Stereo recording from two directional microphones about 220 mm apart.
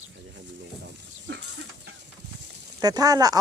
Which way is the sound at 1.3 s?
50° right (ahead or behind).